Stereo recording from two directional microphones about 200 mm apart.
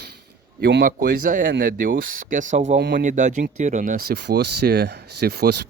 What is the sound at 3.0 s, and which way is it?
Speech, 40° right (ahead or behind).